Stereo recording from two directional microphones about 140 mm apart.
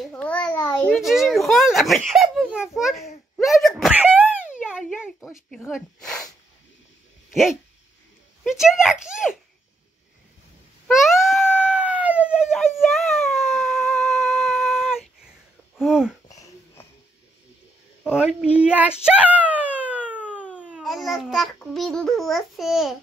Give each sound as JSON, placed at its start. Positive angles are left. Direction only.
{"t": 0.0, "sound": "a child's voice", "side_deg": 10}
{"t": 4.6, "sound": "a sound", "side_deg": -5}
{"t": 5.7, "sound": "speech", "side_deg": 0}
{"t": 8.5, "sound": "speech", "side_deg": -5}
{"t": 10.9, "sound": "a sound", "side_deg": 0}
{"t": 15.8, "sound": "wheeze", "side_deg": -5}
{"t": 16.3, "sound": "wheeze", "side_deg": 25}
{"t": 18.0, "sound": "a sound", "side_deg": -5}
{"t": 20.5, "sound": "speech", "side_deg": -10}